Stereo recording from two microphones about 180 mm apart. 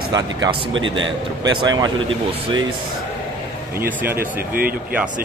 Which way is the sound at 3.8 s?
10° right (ahead or behind).